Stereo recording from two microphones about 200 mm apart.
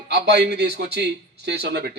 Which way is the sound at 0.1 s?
55° right (ahead or behind).